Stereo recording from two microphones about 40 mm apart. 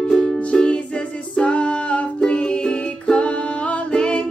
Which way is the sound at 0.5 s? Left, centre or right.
Left.